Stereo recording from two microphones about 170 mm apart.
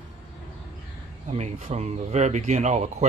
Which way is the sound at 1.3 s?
40° right (ahead or behind).